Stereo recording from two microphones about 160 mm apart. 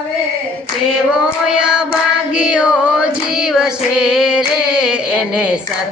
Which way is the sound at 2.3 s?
5° right (ahead or behind).